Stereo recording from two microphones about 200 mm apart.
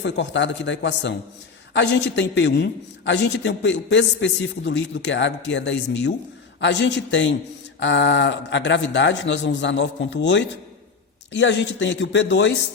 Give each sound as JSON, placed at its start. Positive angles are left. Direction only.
{"t": 0.0, "sound": "a man's voice", "side_deg": 65}